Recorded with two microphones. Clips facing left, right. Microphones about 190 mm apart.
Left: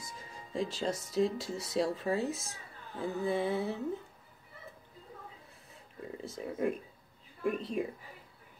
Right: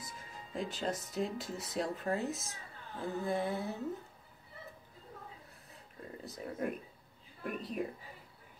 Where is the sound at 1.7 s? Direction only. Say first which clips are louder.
Left 4 dB; centre (ahead or behind).